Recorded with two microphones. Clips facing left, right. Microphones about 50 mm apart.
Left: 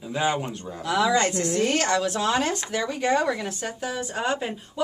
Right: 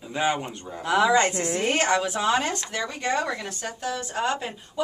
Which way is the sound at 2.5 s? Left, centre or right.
Centre.